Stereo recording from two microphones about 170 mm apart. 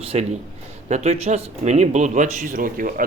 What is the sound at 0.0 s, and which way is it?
Speech, 35° right (ahead or behind).